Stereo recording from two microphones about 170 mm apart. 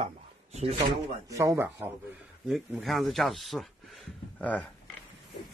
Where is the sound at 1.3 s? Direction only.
15° right (ahead or behind).